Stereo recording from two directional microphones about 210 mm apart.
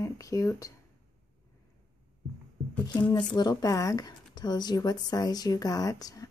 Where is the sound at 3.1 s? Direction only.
20° left (ahead or behind).